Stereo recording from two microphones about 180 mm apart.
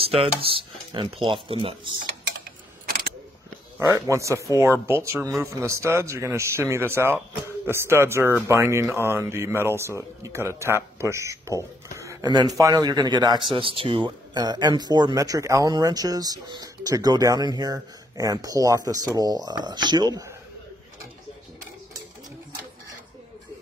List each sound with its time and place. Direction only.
0.0 s speech: 30° right (ahead or behind)
3.8 s speech: 15° right (ahead or behind)